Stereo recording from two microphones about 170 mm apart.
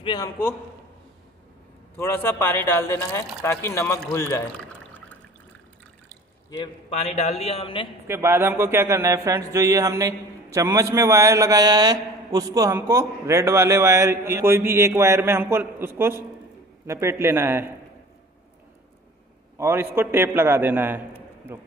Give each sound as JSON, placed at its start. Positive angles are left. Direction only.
{"t": 0.0, "sound": "a man's voice", "side_deg": 25}
{"t": 2.0, "sound": "speech", "side_deg": 15}
{"t": 7.2, "sound": "a man's voice", "side_deg": 40}
{"t": 8.1, "sound": "a man's voice", "side_deg": -15}
{"t": 19.6, "sound": "a man's voice", "side_deg": -15}